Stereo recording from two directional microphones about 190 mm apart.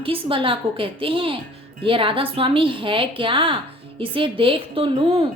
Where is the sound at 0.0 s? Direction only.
30° right (ahead or behind).